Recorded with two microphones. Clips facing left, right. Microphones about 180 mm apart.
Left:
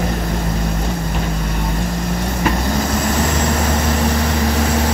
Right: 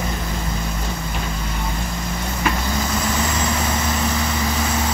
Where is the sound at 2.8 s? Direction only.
55° left (ahead or behind).